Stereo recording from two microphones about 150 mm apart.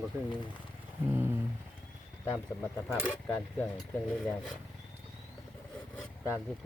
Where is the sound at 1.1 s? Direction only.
15° right (ahead or behind).